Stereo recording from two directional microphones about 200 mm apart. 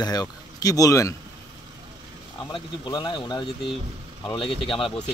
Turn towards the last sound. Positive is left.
turn(degrees=0)  # may be behind; listen again after turning